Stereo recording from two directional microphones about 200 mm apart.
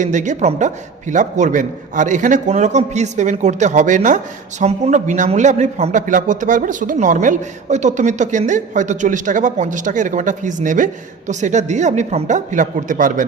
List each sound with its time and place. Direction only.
0.0 s a man's voice: 40° right (ahead or behind)